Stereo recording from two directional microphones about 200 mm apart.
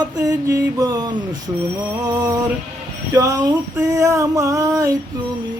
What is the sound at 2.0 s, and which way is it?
Music, 20° right (ahead or behind).